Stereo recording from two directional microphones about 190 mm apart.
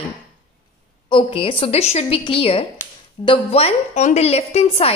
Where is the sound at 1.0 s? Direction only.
30° left (ahead or behind).